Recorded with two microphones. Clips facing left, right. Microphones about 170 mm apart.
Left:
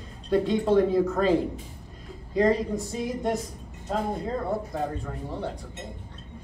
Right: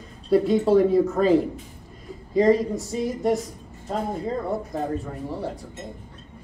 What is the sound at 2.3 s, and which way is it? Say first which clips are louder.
Speech: right 4 dB; centre (ahead or behind).